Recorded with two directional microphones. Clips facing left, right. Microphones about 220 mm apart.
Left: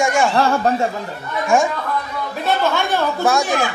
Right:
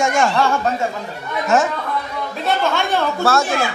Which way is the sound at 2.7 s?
15° left (ahead or behind).